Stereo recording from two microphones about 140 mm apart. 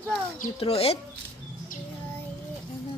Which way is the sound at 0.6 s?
45° left (ahead or behind).